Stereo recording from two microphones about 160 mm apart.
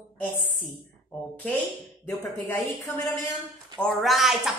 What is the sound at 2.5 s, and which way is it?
Speech, 15° left (ahead or behind).